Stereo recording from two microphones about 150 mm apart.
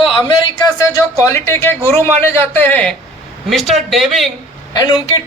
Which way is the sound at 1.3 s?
20° left (ahead or behind).